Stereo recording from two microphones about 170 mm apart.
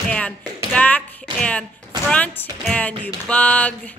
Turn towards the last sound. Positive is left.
turn(degrees=10)  # may be behind; listen again after turning